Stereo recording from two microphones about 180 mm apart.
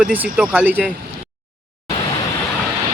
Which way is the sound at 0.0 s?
5° right (ahead or behind).